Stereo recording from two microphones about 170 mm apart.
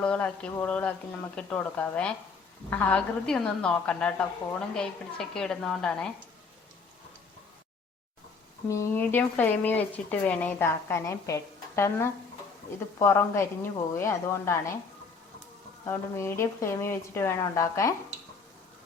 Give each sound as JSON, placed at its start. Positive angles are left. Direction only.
{"t": 0.0, "sound": "a woman's voice", "side_deg": 10}
{"t": 8.6, "sound": "speech", "side_deg": 15}
{"t": 15.9, "sound": "speech", "side_deg": 15}